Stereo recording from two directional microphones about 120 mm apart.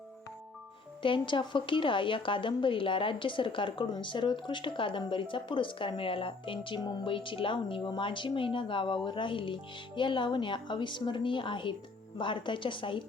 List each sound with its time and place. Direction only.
1.0 s a woman's voice: 45° left (ahead or behind)